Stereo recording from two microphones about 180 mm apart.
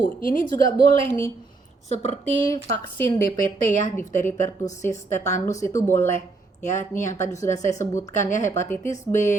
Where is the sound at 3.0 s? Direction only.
15° left (ahead or behind).